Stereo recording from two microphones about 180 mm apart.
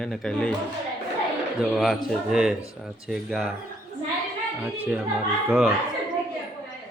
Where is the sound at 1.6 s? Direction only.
Centre (ahead or behind).